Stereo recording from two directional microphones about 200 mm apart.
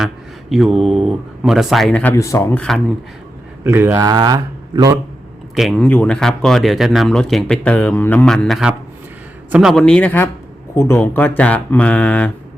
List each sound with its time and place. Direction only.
0.5 s speech: centre (ahead or behind)
3.6 s speech: 10° right (ahead or behind)
5.5 s speech: centre (ahead or behind)